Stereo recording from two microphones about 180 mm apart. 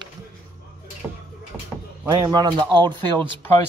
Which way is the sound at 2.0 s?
20° right (ahead or behind).